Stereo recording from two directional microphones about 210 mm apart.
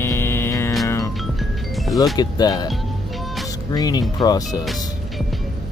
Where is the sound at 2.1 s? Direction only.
20° left (ahead or behind).